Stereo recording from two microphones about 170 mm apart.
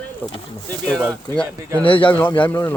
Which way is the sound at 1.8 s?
30° left (ahead or behind).